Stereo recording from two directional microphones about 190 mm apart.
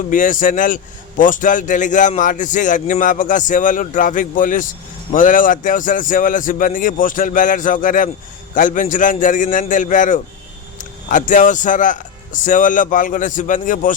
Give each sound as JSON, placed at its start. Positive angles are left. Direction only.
{"t": 0.1, "sound": "a man's voice", "side_deg": 45}